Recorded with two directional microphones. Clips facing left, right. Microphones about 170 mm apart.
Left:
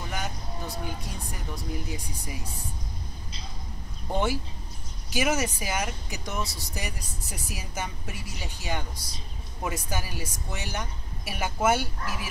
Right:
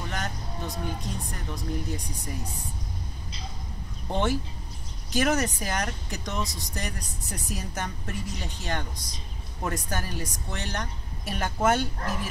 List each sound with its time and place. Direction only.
0.1 s vehicle: 5° left (ahead or behind)
0.8 s speech: 5° left (ahead or behind)
4.1 s speech: 5° left (ahead or behind)
6.4 s speech: 15° right (ahead or behind)
6.7 s speech: 5° left (ahead or behind)
8.9 s speech: 15° right (ahead or behind)
9.6 s speech: 5° left (ahead or behind)